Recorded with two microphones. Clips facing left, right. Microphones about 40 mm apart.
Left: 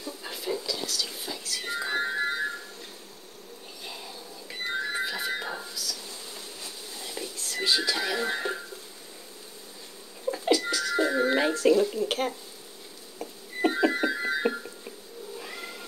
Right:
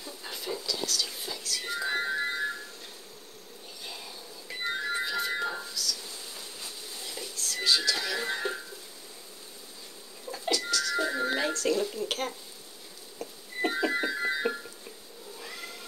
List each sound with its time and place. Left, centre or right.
0.0 s a sound: centre
3.8 s music: centre
10.3 s a sound: centre
11.7 s speech: centre
13.2 s insect: centre
14.0 s music: centre
15.3 s cat: centre